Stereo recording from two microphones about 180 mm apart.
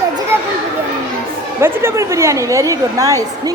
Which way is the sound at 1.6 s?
15° right (ahead or behind).